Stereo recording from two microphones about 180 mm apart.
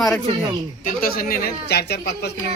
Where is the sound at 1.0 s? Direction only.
55° left (ahead or behind).